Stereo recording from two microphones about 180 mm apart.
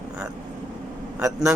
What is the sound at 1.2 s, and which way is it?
Speech, 20° right (ahead or behind).